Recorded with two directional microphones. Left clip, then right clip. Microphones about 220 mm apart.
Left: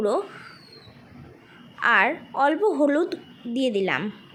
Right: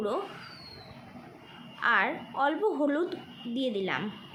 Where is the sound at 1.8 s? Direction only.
25° left (ahead or behind).